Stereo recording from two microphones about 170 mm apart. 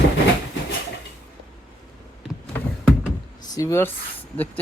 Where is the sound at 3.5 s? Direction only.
15° left (ahead or behind).